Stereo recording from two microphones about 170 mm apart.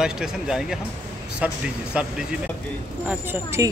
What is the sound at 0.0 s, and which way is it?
Speech, 5° right (ahead or behind).